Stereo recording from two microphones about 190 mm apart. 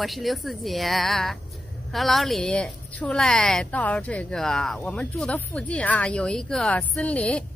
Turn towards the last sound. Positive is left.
turn(degrees=5)  # may be behind; listen again after turning